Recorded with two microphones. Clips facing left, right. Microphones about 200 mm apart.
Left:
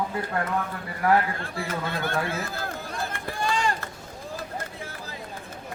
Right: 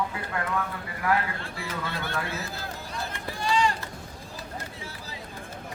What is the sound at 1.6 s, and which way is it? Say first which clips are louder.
Chatter: left 4 dB; 50° left (ahead or behind).